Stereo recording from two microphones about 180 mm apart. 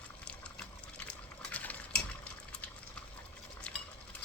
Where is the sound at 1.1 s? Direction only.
10° left (ahead or behind).